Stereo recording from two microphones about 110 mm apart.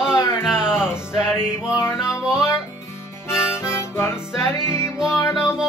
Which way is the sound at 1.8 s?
25° left (ahead or behind).